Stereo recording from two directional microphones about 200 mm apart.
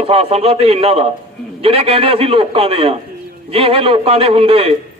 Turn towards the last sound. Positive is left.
turn(degrees=-30)  # may be behind; listen again after turning